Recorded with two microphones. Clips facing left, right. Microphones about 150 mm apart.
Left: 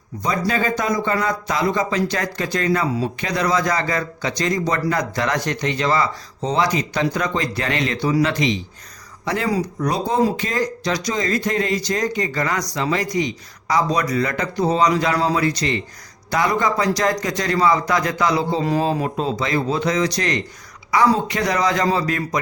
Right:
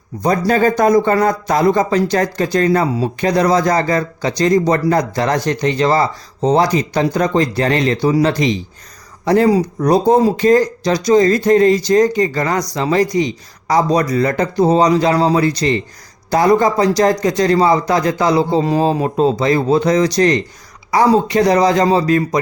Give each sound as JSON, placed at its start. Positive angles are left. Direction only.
{"t": 0.2, "sound": "speech", "side_deg": -45}